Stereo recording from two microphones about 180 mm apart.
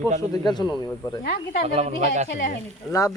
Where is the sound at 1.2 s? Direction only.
60° left (ahead or behind).